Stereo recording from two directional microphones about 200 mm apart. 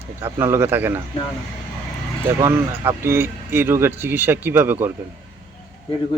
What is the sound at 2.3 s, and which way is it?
Speech, 10° right (ahead or behind).